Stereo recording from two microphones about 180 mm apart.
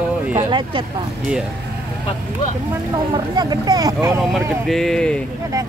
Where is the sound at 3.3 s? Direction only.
20° right (ahead or behind).